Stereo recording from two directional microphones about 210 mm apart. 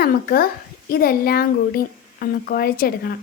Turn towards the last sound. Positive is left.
turn(degrees=45)  # may be behind; listen again after turning